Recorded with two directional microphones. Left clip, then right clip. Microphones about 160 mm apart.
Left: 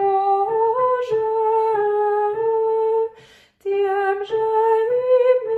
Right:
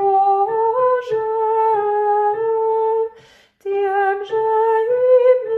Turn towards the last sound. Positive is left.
turn(degrees=0)  # may be behind; listen again after turning